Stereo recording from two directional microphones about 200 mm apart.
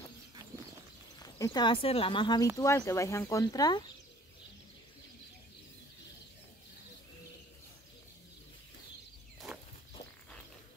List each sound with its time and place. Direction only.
1.2 s speech: 20° left (ahead or behind)